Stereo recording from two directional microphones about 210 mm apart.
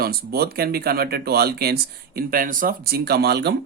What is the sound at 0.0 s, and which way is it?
Speech, 45° right (ahead or behind).